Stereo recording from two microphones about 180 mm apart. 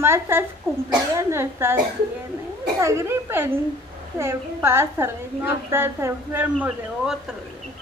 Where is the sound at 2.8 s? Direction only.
15° right (ahead or behind).